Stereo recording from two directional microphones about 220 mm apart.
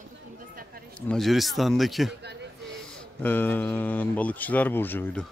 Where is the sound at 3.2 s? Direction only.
10° left (ahead or behind).